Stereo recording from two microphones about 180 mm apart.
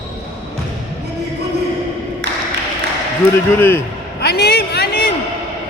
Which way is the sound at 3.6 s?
10° left (ahead or behind).